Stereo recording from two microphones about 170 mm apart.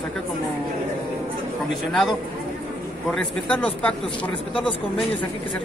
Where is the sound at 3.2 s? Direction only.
5° left (ahead or behind).